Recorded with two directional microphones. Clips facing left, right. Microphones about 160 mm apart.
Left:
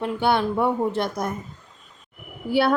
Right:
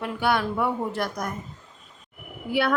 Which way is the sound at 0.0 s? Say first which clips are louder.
Left 3 dB; 25° left (ahead or behind).